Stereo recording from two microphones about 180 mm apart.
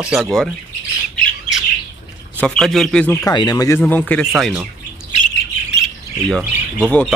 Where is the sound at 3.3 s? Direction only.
25° left (ahead or behind).